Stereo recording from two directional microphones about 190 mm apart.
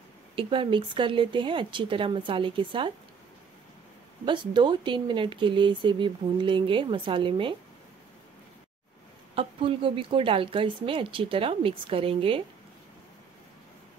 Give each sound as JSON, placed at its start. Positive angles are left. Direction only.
{"t": 0.4, "sound": "speech", "side_deg": -25}
{"t": 4.3, "sound": "speech", "side_deg": -25}
{"t": 9.3, "sound": "speech", "side_deg": -30}